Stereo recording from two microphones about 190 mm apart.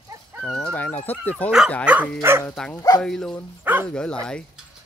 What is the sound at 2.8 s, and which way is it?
Speech, 20° left (ahead or behind).